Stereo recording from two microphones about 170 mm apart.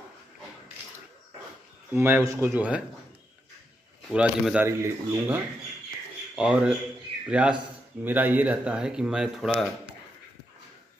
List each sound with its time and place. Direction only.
1.9 s speech: 10° right (ahead or behind)
4.1 s speech: 5° right (ahead or behind)